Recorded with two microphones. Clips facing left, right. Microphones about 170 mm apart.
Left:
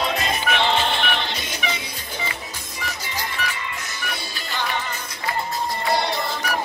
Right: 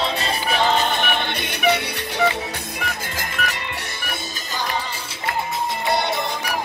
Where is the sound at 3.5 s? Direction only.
65° right (ahead or behind).